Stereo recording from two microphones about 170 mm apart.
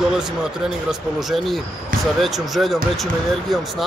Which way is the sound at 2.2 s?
Centre (ahead or behind).